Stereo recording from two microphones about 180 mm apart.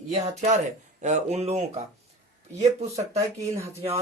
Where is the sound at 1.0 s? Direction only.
40° right (ahead or behind).